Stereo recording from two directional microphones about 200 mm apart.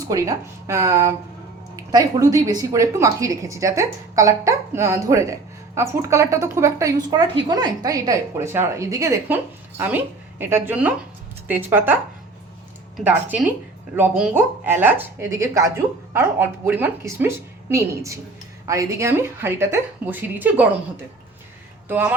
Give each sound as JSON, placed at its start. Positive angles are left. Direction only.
{"t": 0.1, "sound": "speech", "side_deg": -15}
{"t": 13.1, "sound": "speech", "side_deg": -10}